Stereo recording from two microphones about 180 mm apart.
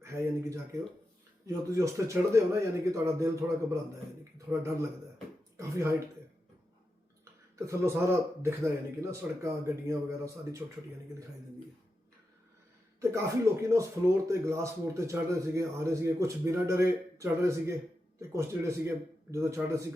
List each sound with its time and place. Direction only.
0.0 s a man's voice: 15° right (ahead or behind)
7.5 s a man's voice: 15° right (ahead or behind)
13.0 s a man's voice: 15° right (ahead or behind)